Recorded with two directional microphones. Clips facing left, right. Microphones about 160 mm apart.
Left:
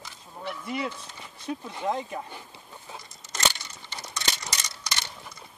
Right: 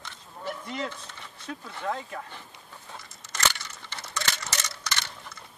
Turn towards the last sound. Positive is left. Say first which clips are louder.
# right 1 dB
turn(degrees=15)  # may be behind; listen again after turning